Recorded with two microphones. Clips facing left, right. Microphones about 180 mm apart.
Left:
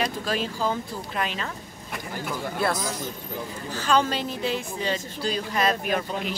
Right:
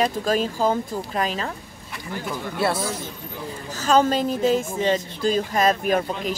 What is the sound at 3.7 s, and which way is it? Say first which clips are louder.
Speech: right 5 dB; 40° right (ahead or behind).